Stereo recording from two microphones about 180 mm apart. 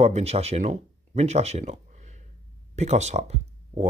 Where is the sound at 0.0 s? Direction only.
35° right (ahead or behind).